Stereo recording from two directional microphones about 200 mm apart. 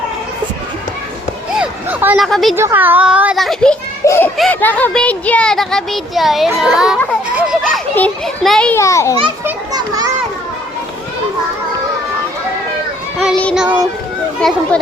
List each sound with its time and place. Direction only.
1.5 s a sound: 5° right (ahead or behind)
2.2 s speech: centre (ahead or behind)
2.6 s speech: 10° right (ahead or behind)
4.0 s a child's voice: 15° left (ahead or behind)
9.4 s a child's voice: 20° right (ahead or behind)
13.1 s child singing: centre (ahead or behind)